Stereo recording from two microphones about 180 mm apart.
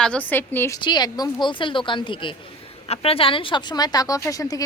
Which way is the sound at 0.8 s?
25° left (ahead or behind).